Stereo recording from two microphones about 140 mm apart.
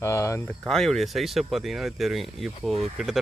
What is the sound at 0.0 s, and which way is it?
Speech, 20° left (ahead or behind).